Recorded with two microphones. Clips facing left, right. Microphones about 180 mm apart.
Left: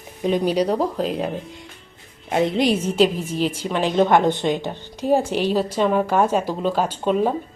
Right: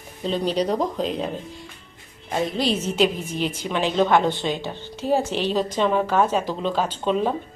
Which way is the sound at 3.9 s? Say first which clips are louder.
Left 3 dB; 15° left (ahead or behind).